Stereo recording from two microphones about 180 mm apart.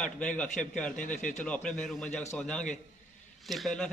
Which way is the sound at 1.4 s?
5° left (ahead or behind).